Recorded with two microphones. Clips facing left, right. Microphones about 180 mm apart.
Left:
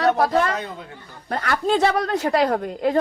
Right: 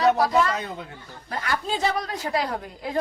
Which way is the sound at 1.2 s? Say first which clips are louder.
Left 6 dB; 60° left (ahead or behind).